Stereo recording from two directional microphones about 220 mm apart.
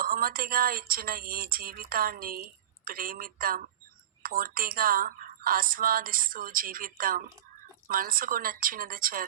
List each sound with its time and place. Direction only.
0.0 s speech: 40° right (ahead or behind)